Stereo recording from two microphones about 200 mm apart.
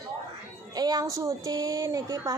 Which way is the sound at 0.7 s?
20° right (ahead or behind).